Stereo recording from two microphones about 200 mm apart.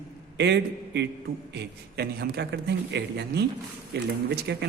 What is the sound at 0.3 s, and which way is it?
A man's voice, 60° right (ahead or behind).